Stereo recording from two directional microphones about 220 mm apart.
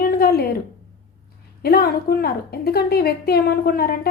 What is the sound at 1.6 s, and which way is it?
A woman's voice, 45° left (ahead or behind).